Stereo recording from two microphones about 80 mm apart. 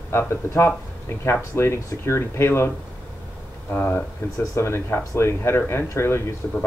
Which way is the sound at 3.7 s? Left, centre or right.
Left.